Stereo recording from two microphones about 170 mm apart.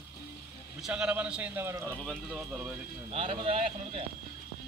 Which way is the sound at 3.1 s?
35° right (ahead or behind).